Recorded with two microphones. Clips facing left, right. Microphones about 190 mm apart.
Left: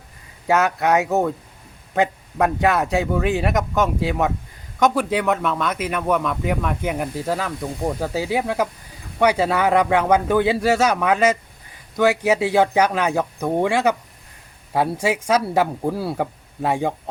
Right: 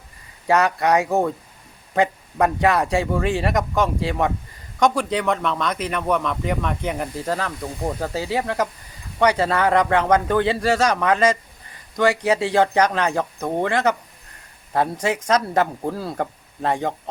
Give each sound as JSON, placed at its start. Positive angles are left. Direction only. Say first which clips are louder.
{"t": 0.4, "sound": "speech", "louder": "even", "side_deg": 0}